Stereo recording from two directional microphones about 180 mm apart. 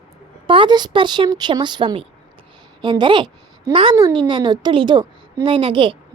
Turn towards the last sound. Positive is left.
turn(degrees=-30)  # may be behind; listen again after turning